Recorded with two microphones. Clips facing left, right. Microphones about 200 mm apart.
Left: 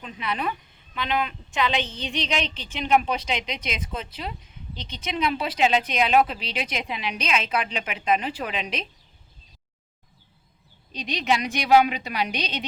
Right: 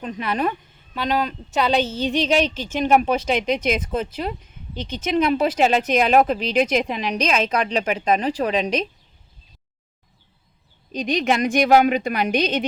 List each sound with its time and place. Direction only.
0.0 s a woman's voice: 45° right (ahead or behind)
10.9 s a woman's voice: 50° right (ahead or behind)